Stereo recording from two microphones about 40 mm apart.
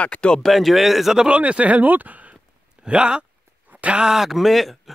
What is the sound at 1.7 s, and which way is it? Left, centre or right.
Speech, right.